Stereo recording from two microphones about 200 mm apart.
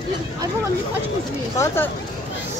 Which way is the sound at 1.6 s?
10° left (ahead or behind).